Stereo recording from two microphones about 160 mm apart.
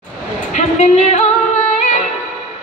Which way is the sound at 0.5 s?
45° left (ahead or behind).